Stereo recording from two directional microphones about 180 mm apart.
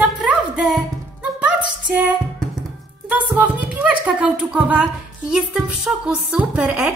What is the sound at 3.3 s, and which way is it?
Speech, 10° right (ahead or behind).